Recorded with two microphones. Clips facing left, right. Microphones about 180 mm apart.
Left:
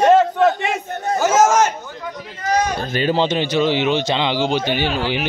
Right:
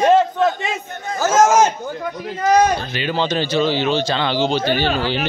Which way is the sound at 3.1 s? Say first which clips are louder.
Left 1 dB; 25° left (ahead or behind).